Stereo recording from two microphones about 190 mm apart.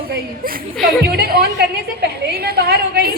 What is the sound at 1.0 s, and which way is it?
A woman's voice, 55° right (ahead or behind).